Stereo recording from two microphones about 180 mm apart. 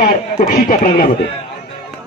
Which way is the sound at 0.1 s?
55° left (ahead or behind).